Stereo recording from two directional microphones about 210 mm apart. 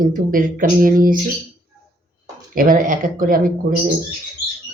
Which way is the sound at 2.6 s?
40° right (ahead or behind).